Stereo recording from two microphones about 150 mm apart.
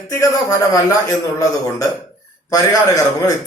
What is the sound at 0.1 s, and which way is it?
A man's voice, 20° left (ahead or behind).